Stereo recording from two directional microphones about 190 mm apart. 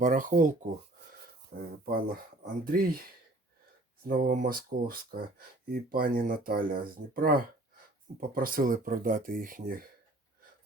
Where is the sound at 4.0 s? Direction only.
50° right (ahead or behind).